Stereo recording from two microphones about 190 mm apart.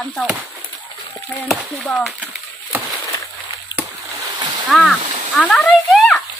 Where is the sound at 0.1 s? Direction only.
Centre (ahead or behind).